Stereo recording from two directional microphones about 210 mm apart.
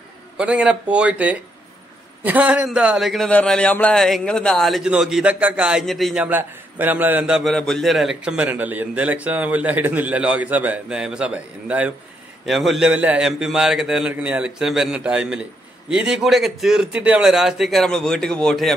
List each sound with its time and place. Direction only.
0.4 s speech: 5° right (ahead or behind)